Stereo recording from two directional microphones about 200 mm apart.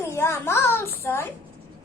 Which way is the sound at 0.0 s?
15° left (ahead or behind).